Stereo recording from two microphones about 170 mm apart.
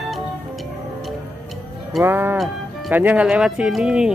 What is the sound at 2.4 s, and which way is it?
Speech, 5° right (ahead or behind).